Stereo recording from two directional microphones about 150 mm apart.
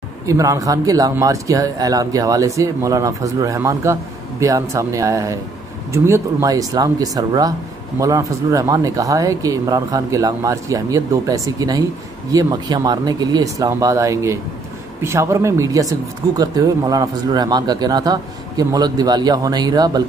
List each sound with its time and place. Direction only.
0.3 s speech: 20° right (ahead or behind)